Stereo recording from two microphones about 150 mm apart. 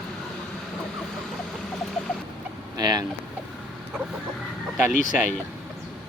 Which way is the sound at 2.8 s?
25° right (ahead or behind).